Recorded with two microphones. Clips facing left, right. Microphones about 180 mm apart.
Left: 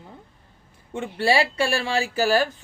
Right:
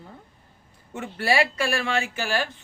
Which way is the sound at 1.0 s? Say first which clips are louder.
Left 2 dB; 30° left (ahead or behind).